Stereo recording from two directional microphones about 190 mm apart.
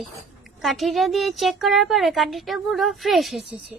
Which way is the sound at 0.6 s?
Centre (ahead or behind).